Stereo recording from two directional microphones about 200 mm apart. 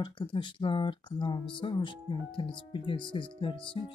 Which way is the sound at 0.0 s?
25° left (ahead or behind).